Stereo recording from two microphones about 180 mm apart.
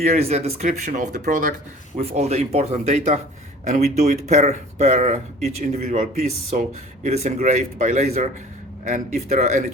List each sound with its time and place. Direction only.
0.0 s speech: 35° right (ahead or behind)